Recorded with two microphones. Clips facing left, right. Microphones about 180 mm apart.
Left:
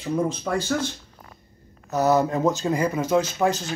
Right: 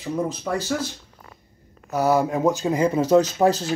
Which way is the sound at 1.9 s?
10° right (ahead or behind).